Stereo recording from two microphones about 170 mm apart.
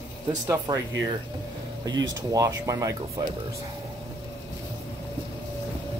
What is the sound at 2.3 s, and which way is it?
Speech, 20° right (ahead or behind).